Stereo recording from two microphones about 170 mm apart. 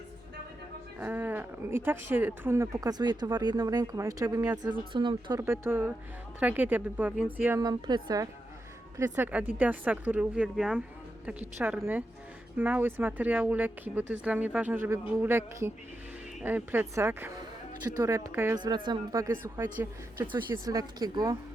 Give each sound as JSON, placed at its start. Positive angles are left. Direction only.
{"t": 0.9, "sound": "speech", "side_deg": -10}
{"t": 5.4, "sound": "speech", "side_deg": -15}
{"t": 7.6, "sound": "speech", "side_deg": -25}
{"t": 18.6, "sound": "speech", "side_deg": -25}
{"t": 20.2, "sound": "speech", "side_deg": -25}